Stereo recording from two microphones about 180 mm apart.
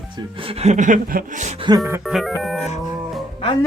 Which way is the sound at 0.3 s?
30° right (ahead or behind).